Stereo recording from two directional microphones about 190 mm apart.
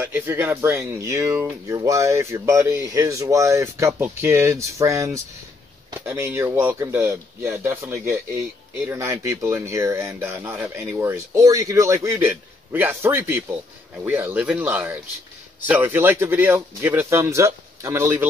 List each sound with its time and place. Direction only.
0.0 s speech: 10° right (ahead or behind)